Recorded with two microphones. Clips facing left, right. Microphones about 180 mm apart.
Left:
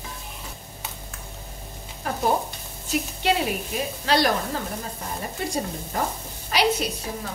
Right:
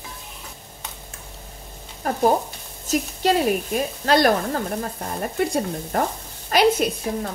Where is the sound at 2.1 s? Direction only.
45° right (ahead or behind).